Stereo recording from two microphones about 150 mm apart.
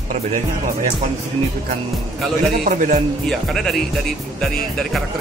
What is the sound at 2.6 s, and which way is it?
Speech, 55° right (ahead or behind).